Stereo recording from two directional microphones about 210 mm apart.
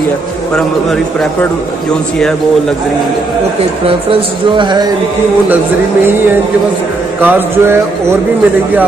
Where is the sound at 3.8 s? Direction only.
25° right (ahead or behind).